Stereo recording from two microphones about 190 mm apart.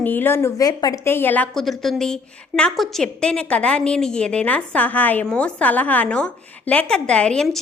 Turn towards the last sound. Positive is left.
turn(degrees=0)  # may be behind; listen again after turning